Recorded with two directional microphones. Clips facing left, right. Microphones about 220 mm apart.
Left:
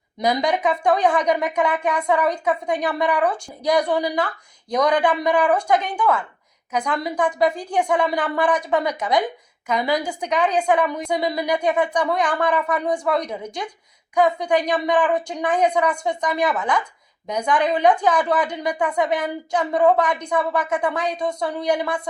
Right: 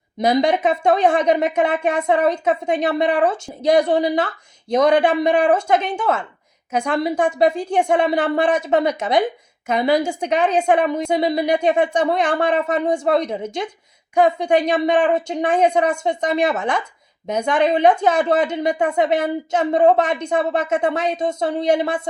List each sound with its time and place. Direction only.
0.2 s a woman's voice: 25° right (ahead or behind)